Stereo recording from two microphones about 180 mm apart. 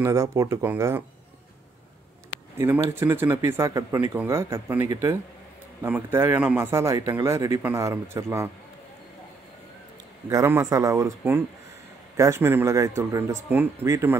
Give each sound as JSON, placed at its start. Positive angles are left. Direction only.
{"t": 0.0, "sound": "speech", "side_deg": -15}
{"t": 2.5, "sound": "speech", "side_deg": -15}
{"t": 10.3, "sound": "speech", "side_deg": -15}